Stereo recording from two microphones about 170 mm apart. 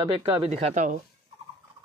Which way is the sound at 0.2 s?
35° right (ahead or behind).